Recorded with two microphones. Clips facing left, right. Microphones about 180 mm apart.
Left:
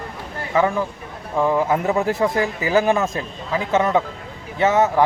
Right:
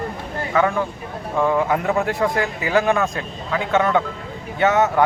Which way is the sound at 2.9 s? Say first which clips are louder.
Even; 20° left (ahead or behind).